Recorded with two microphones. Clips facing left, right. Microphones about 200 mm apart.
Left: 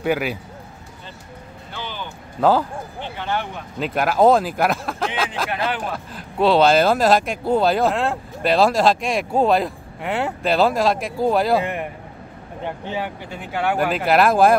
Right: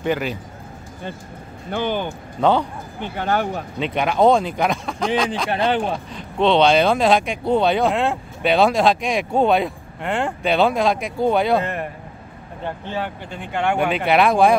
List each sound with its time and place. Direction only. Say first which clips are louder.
0.0 s speech: left 1 dB; 10° left (ahead or behind)
1.7 s speech: right 10 dB; 55° right (ahead or behind)
2.4 s speech: even; 5° left (ahead or behind)
3.0 s speech: right 5 dB; 45° right (ahead or behind)
3.8 s speech: left 1 dB; 5° left (ahead or behind)
5.5 s speech: right 5 dB; 30° right (ahead or behind)
5.9 s speech: even; 5° left (ahead or behind)
11.6 s speech: even; 15° left (ahead or behind)